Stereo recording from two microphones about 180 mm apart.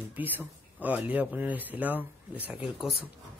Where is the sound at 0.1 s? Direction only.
10° right (ahead or behind).